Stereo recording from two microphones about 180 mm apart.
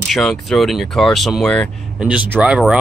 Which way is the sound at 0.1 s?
Centre (ahead or behind).